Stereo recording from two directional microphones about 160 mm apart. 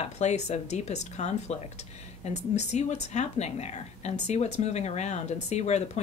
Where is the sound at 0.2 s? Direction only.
45° left (ahead or behind).